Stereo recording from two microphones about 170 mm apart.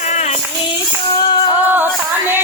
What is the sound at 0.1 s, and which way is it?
Child singing, 40° left (ahead or behind).